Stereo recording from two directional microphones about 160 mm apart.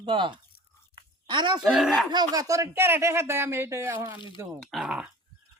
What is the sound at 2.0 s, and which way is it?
Speech, 25° right (ahead or behind).